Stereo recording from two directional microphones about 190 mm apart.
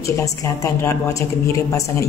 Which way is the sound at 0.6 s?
15° left (ahead or behind).